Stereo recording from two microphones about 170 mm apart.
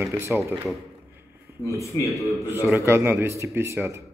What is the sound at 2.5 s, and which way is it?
A man's voice, 15° right (ahead or behind).